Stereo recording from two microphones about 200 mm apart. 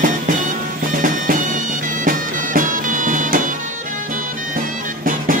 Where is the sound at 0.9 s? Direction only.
40° right (ahead or behind).